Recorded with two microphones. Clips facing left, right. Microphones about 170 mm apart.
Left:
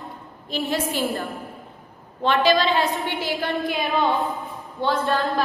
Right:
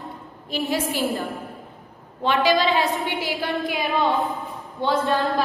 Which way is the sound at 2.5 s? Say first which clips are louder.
Even; 15° right (ahead or behind).